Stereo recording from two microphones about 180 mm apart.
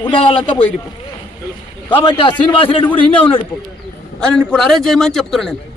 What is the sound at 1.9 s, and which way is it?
A man's voice, 25° left (ahead or behind).